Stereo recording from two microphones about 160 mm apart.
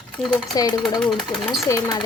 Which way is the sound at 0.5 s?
25° left (ahead or behind).